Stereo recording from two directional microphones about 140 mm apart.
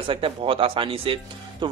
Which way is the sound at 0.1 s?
40° right (ahead or behind).